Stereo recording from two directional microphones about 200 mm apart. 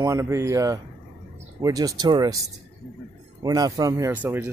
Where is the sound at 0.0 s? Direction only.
15° right (ahead or behind).